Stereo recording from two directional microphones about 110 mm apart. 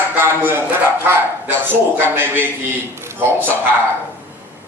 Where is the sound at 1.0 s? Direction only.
20° right (ahead or behind).